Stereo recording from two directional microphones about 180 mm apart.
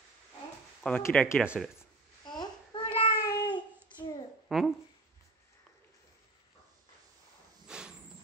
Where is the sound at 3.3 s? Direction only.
20° left (ahead or behind).